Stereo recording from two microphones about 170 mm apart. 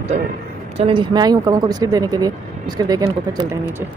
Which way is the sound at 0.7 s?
30° right (ahead or behind).